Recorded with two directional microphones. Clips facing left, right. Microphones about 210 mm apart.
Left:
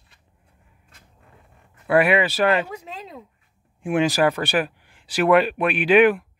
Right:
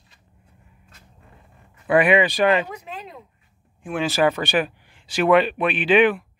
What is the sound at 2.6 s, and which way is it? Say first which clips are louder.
Speech: even; 25° left (ahead or behind).